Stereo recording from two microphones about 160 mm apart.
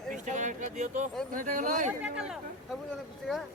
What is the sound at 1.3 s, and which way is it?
Speech, 55° right (ahead or behind).